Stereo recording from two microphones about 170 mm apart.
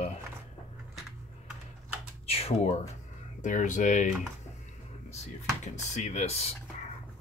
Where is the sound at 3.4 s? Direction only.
50° left (ahead or behind).